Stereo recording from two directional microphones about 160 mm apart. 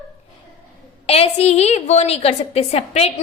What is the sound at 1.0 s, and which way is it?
A woman's voice, 40° left (ahead or behind).